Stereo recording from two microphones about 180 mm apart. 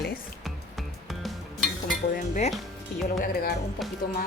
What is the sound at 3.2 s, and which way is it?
Speech, 55° left (ahead or behind).